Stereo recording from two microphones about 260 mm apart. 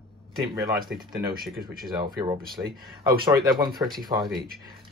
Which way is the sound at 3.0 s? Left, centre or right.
Centre.